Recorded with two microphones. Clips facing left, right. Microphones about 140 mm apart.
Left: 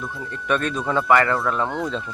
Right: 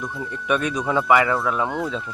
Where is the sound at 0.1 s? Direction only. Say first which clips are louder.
Even; centre (ahead or behind).